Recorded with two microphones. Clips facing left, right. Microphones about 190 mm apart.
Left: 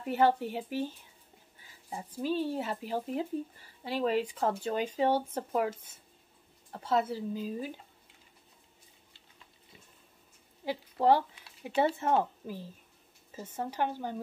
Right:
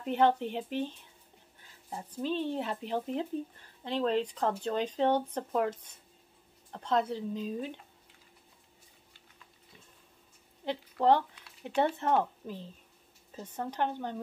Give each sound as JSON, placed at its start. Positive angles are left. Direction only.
{"t": 0.0, "sound": "speech", "side_deg": 5}
{"t": 10.6, "sound": "speech", "side_deg": 10}